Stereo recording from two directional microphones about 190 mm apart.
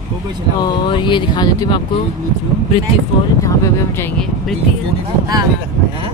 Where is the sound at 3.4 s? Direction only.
15° left (ahead or behind).